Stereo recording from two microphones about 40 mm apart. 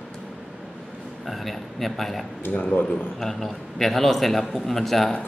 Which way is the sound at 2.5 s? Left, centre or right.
Left.